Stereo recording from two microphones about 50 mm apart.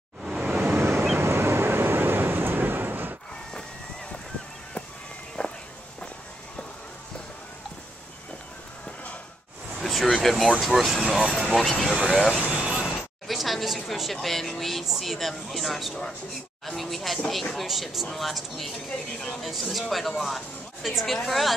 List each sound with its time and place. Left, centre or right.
0.4 s waves: centre
0.7 s waves: right
1.2 s vehicle: right
5.4 s walk: left
9.8 s vehicle: centre
10.2 s speech: centre
11.3 s speech: centre
11.9 s speech: centre
12.4 s vehicle: centre
13.3 s a sound: centre
14.2 s speech: centre
19.4 s speech: centre